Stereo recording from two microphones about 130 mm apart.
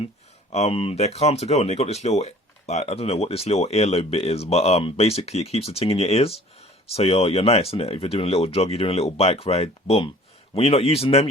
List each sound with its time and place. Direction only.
0.5 s speech: 50° left (ahead or behind)